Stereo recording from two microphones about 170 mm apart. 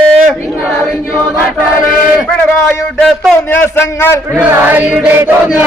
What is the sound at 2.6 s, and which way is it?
Speech, 15° left (ahead or behind).